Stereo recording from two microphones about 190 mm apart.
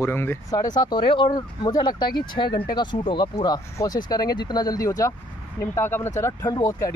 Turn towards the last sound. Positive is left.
turn(degrees=20)  # may be behind; listen again after turning